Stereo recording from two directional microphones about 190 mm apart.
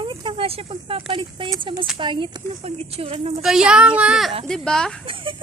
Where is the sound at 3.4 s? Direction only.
5° right (ahead or behind).